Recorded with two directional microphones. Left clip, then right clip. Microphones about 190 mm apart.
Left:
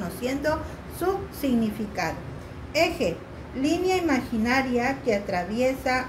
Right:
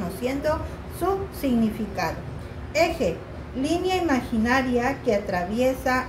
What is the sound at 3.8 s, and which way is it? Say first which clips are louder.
A woman's voice: right 1 dB; 10° left (ahead or behind).